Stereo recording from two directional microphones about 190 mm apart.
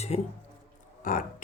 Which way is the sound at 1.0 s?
45° left (ahead or behind).